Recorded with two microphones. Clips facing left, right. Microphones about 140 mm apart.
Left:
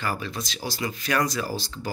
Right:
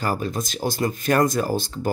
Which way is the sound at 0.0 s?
45° right (ahead or behind).